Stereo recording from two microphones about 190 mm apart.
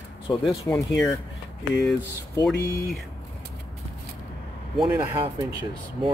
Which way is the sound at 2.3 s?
15° left (ahead or behind).